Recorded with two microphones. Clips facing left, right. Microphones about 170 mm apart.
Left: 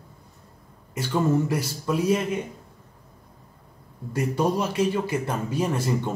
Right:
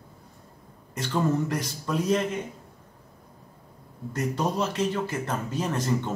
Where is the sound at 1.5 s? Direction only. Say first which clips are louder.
Left 3 dB; 10° left (ahead or behind).